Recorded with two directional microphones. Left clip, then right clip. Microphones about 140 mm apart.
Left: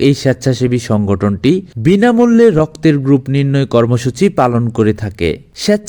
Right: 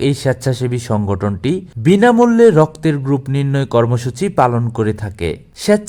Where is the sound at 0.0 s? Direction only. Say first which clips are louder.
Left 4 dB; 20° left (ahead or behind).